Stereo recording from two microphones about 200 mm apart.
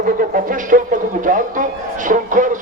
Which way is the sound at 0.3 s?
40° right (ahead or behind).